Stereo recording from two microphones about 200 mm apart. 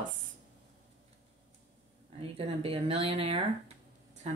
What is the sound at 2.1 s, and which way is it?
Speech, 30° right (ahead or behind).